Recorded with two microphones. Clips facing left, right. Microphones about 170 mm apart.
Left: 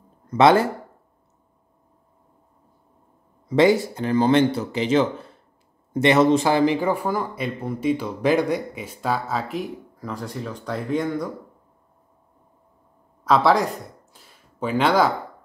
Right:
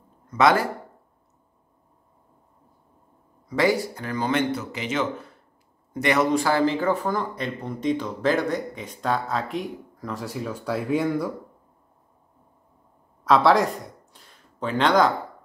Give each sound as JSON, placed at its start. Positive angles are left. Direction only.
{"t": 0.4, "sound": "speech", "side_deg": 25}
{"t": 3.4, "sound": "speech", "side_deg": 25}
{"t": 13.2, "sound": "speech", "side_deg": 0}